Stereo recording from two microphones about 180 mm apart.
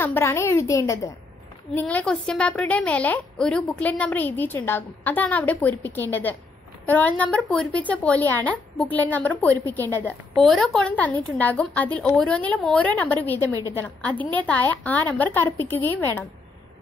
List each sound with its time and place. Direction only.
0.0 s a woman's voice: 15° left (ahead or behind)